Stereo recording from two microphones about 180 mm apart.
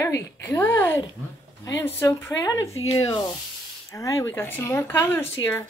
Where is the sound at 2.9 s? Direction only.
25° left (ahead or behind).